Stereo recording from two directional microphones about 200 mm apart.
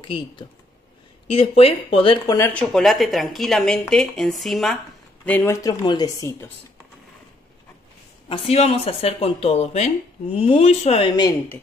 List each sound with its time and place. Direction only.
0.0 s speech: 25° left (ahead or behind)
2.3 s speech: 10° left (ahead or behind)
8.3 s speech: 30° left (ahead or behind)